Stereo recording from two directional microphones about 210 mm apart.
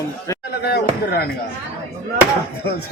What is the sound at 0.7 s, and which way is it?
Speech, 50° left (ahead or behind).